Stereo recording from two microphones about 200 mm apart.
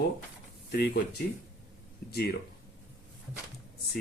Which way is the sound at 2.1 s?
50° left (ahead or behind).